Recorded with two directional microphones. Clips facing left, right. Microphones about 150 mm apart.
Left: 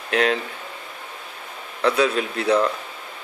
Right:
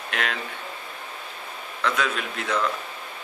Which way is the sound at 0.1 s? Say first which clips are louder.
Left 10 dB; 35° left (ahead or behind).